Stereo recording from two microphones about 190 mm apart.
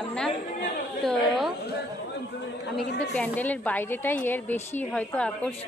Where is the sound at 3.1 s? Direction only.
10° left (ahead or behind).